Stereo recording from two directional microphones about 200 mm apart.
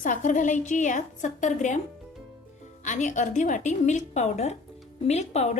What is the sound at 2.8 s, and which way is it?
A woman's voice, 35° left (ahead or behind).